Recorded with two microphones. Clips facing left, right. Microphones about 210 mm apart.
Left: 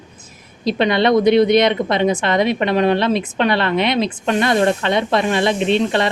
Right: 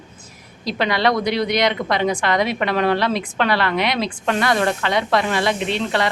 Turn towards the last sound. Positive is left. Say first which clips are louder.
# left 5 dB
turn(degrees=25)  # may be behind; listen again after turning